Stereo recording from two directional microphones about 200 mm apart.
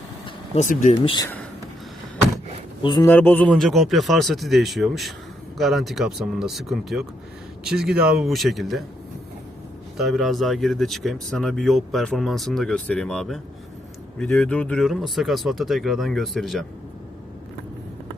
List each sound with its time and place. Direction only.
0.3 s vehicle: 35° left (ahead or behind)
1.0 s speech: 20° left (ahead or behind)
2.8 s speech: 25° left (ahead or behind)
3.1 s speech: 10° left (ahead or behind)
10.0 s speech: centre (ahead or behind)